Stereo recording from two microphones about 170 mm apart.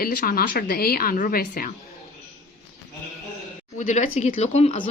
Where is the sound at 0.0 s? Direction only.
60° left (ahead or behind).